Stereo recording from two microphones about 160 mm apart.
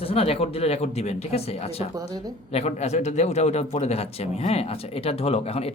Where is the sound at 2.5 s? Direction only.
40° left (ahead or behind).